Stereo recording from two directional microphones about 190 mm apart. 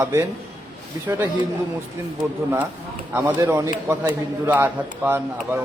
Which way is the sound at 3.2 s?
15° right (ahead or behind).